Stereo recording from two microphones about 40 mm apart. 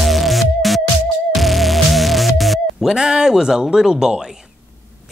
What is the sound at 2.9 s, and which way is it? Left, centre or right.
Speech, centre.